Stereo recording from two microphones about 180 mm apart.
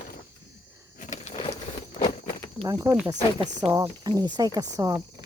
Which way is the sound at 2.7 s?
15° right (ahead or behind).